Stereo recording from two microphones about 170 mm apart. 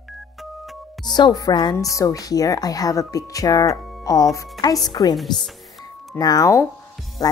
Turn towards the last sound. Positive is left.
turn(degrees=20)  # may be behind; listen again after turning